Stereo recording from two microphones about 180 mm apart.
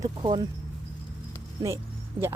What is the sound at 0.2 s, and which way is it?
Speech, 25° right (ahead or behind).